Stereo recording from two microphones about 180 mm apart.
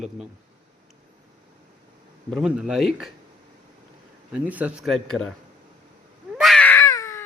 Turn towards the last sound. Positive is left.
turn(degrees=20)  # may be behind; listen again after turning